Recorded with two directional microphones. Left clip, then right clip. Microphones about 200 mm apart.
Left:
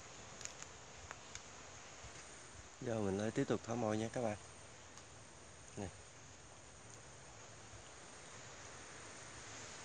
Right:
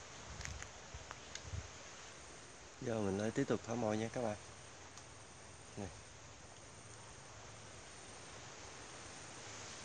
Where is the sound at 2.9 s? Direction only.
15° left (ahead or behind).